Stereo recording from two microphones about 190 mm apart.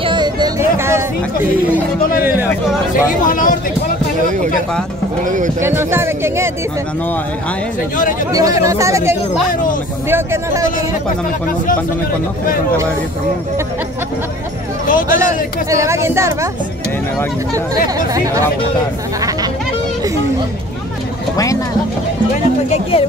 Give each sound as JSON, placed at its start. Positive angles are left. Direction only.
{"t": 0.0, "sound": "a sound", "side_deg": -25}
{"t": 3.1, "sound": "speech", "side_deg": 45}
{"t": 5.2, "sound": "speech", "side_deg": -40}
{"t": 5.6, "sound": "speech", "side_deg": -15}
{"t": 8.3, "sound": "speech", "side_deg": -20}
{"t": 14.9, "sound": "speech", "side_deg": 45}
{"t": 15.2, "sound": "speech", "side_deg": -15}
{"t": 17.8, "sound": "speech", "side_deg": -20}
{"t": 22.7, "sound": "speech", "side_deg": 30}